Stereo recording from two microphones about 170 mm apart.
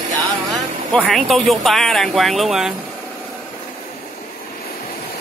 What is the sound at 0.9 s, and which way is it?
Speech, centre (ahead or behind).